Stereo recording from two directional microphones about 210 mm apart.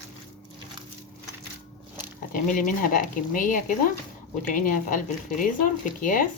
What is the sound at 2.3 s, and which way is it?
Speech, 40° left (ahead or behind).